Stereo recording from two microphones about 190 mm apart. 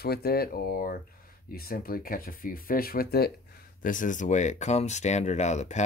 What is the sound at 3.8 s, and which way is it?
Speech, 45° left (ahead or behind).